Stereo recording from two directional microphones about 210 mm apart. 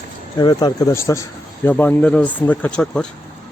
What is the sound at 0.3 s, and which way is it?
Speech, 20° left (ahead or behind).